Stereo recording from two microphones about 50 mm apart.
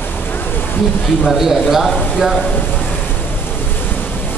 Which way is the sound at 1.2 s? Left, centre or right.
Centre.